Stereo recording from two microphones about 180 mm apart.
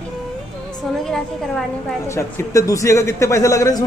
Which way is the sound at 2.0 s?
15° left (ahead or behind).